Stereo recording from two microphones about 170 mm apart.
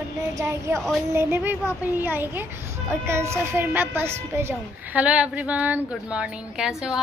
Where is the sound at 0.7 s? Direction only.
Centre (ahead or behind).